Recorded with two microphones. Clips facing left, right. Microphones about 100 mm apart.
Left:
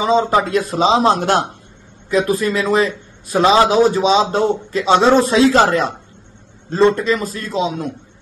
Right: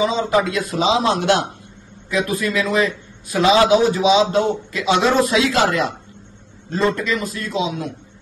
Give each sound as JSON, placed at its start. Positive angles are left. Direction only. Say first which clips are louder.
{"t": 0.0, "sound": "a man's voice", "louder": "left 3 dB", "side_deg": 35}